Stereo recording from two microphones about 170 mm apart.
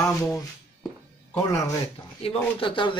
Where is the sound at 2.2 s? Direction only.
35° left (ahead or behind).